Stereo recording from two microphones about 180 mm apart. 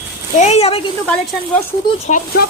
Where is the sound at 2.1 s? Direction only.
45° left (ahead or behind).